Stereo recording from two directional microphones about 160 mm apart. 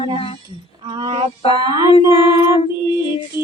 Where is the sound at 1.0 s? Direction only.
30° right (ahead or behind).